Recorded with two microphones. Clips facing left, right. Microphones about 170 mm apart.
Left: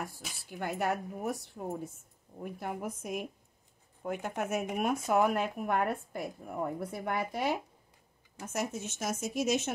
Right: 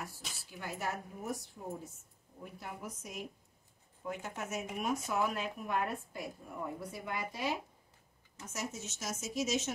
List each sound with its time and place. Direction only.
0.5 s speech: 55° left (ahead or behind)